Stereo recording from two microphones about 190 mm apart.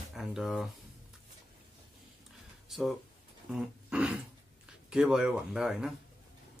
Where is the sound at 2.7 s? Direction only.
Centre (ahead or behind).